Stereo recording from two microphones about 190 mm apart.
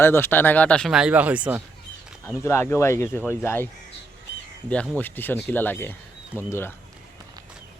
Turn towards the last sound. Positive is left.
turn(degrees=10)  # may be behind; listen again after turning